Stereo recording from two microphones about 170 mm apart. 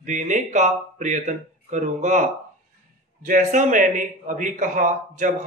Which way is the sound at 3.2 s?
50° right (ahead or behind).